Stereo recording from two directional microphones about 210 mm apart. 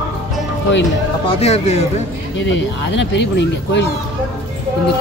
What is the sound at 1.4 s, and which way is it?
Speech, 30° left (ahead or behind).